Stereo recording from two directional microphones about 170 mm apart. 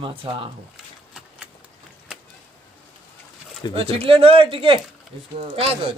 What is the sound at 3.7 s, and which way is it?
Speech, 35° right (ahead or behind).